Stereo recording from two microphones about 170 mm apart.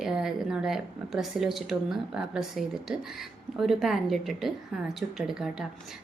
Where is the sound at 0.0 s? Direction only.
5° right (ahead or behind).